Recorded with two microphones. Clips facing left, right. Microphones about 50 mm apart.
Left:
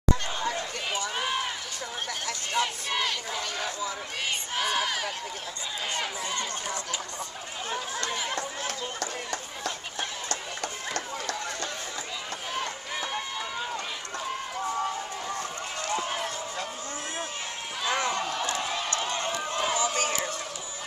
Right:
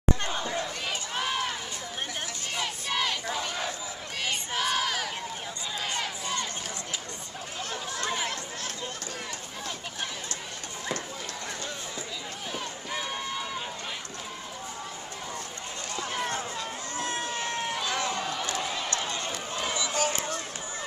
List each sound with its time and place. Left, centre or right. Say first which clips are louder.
1.1 s run: right 3 dB; centre
2.5 s crowd: left 3 dB; centre
3.1 s battle cry: right 1 dB; centre
4.6 s crowd: even; centre
8.0 s chatter: right 5 dB; centre
8.6 s run: left 4 dB; left
17.0 s run: right 4 dB; right
17.8 s run: left 2 dB; left